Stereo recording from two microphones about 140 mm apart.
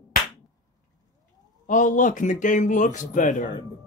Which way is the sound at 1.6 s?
65° left (ahead or behind).